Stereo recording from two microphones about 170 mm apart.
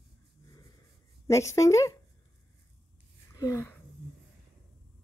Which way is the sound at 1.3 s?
20° left (ahead or behind).